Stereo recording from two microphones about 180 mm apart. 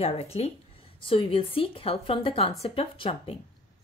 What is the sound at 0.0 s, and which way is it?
A woman's voice, 35° left (ahead or behind).